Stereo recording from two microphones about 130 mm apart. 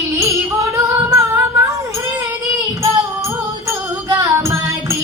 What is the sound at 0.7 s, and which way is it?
Music, 20° right (ahead or behind).